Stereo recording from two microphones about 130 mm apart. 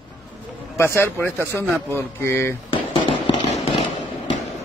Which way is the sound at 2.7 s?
40° left (ahead or behind).